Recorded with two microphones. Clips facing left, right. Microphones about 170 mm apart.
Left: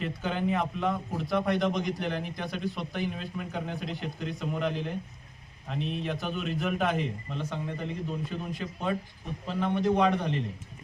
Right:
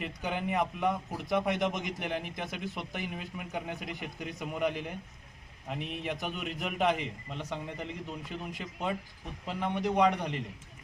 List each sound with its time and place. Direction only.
0.0 s a man's voice: 10° right (ahead or behind)